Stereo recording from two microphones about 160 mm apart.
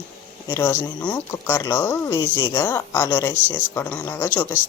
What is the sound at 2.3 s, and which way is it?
Speech, 30° left (ahead or behind).